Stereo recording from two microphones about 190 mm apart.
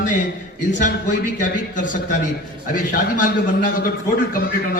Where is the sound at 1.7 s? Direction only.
45° left (ahead or behind).